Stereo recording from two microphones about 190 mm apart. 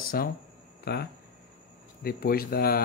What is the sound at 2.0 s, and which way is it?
Speech, 50° left (ahead or behind).